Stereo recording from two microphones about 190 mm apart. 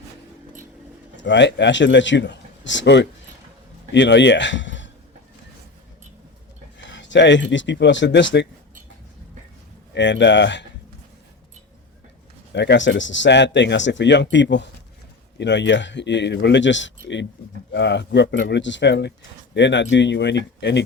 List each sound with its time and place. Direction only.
1.1 s a man's voice: 70° left (ahead or behind)
6.7 s speech: 70° left (ahead or behind)
9.9 s speech: 70° left (ahead or behind)
12.5 s speech: 70° left (ahead or behind)